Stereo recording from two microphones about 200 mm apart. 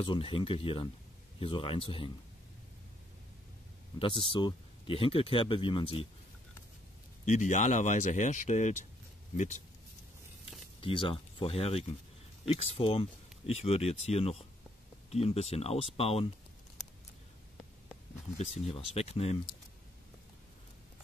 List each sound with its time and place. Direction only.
0.0 s speech: 25° left (ahead or behind)
4.0 s speech: 25° left (ahead or behind)
7.2 s speech: 35° left (ahead or behind)
10.8 s speech: 25° left (ahead or behind)
18.4 s speech: 30° left (ahead or behind)